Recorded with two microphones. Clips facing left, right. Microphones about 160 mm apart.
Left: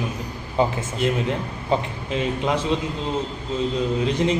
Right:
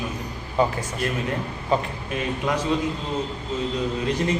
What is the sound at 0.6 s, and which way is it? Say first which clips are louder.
A man's voice: left 1 dB; 25° left (ahead or behind).